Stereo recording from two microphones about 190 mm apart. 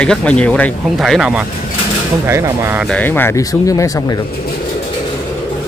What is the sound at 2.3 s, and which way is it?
Speech, 15° right (ahead or behind).